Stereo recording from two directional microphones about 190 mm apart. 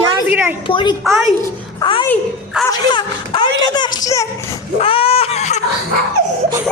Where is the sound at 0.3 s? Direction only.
5° right (ahead or behind).